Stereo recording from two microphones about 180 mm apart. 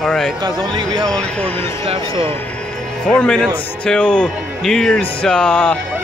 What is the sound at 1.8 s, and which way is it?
Speech, 30° right (ahead or behind).